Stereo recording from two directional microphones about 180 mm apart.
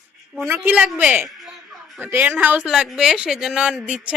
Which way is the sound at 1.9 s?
10° right (ahead or behind).